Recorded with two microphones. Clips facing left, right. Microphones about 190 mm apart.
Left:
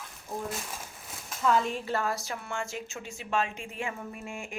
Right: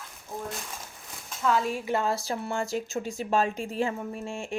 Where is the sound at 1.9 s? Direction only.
25° right (ahead or behind).